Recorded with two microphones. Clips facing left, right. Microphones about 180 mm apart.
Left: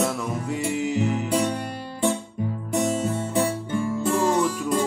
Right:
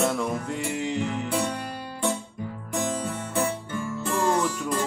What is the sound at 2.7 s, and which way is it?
Music, 20° left (ahead or behind).